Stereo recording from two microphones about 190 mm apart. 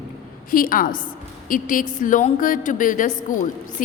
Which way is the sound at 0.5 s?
50° left (ahead or behind).